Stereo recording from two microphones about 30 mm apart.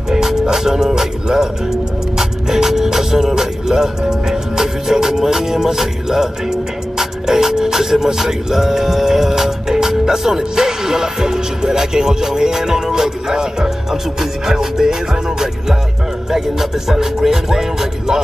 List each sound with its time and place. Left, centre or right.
0.1 s speech: centre
14.4 s music: centre